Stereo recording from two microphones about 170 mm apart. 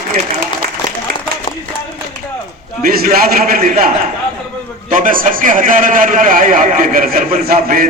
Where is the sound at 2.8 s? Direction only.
60° right (ahead or behind).